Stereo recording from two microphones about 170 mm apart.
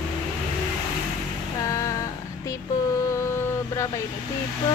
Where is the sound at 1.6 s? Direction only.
20° left (ahead or behind).